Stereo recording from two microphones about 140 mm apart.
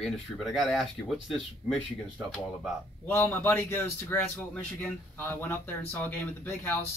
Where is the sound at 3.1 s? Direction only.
15° left (ahead or behind).